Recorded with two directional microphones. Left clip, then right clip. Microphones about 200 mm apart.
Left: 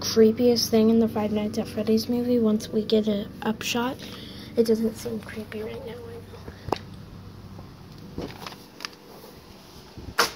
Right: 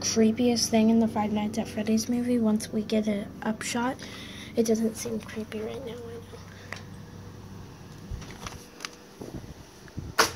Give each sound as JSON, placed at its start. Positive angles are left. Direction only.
{"t": 0.0, "sound": "a woman's voice", "side_deg": -5}
{"t": 4.6, "sound": "a woman's voice", "side_deg": -15}
{"t": 5.3, "sound": "speech", "side_deg": -35}